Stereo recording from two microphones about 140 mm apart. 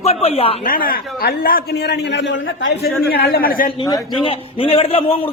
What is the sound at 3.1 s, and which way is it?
Speech, 90° left.